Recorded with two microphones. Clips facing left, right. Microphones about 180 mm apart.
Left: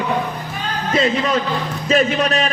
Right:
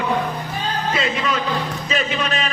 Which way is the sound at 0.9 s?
40° left (ahead or behind).